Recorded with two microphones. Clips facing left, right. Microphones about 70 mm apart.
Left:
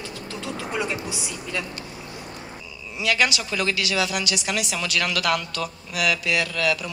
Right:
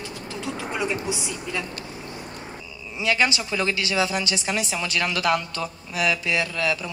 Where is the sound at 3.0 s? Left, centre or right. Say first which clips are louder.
Even; right.